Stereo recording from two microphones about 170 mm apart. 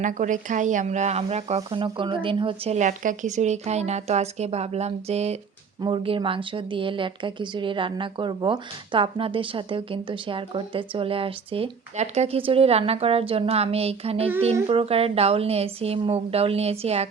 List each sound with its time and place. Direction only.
0.0 s speech: 50° right (ahead or behind)